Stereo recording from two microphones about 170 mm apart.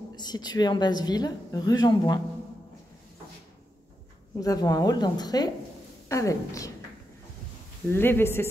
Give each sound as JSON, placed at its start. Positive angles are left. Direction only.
{"t": 0.1, "sound": "a woman's voice", "side_deg": 25}
{"t": 4.4, "sound": "a woman's voice", "side_deg": 20}
{"t": 7.9, "sound": "speech", "side_deg": 15}